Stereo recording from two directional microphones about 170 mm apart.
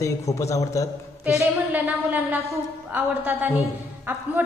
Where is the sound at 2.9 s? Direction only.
10° right (ahead or behind).